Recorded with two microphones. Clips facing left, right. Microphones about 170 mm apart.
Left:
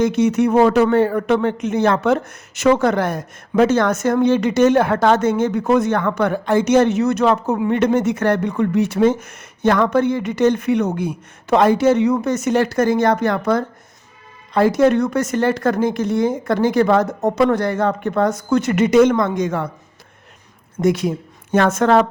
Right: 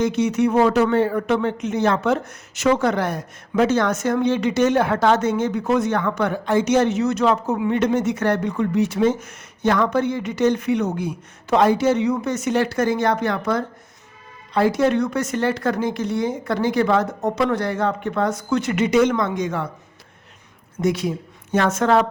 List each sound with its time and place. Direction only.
0.0 s a man's voice: 50° left (ahead or behind)
20.8 s a man's voice: 50° left (ahead or behind)